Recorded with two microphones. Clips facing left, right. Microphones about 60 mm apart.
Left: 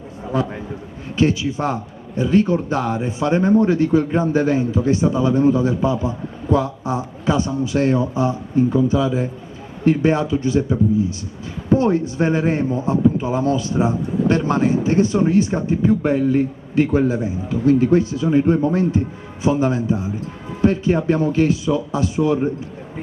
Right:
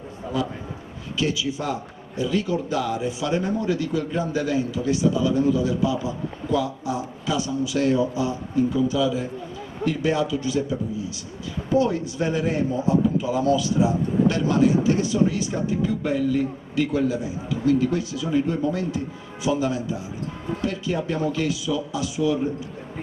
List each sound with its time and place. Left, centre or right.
0.3 s a man's voice: left